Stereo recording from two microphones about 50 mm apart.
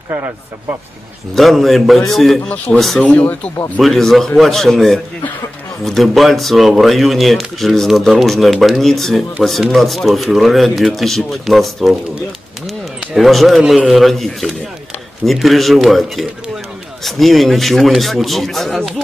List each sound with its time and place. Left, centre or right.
0.1 s speech: right
1.3 s speech: centre
2.4 s speech: left
3.8 s speech: centre
13.2 s speech: centre